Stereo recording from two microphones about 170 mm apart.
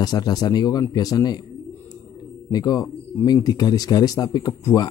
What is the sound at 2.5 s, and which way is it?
Speech, 20° left (ahead or behind).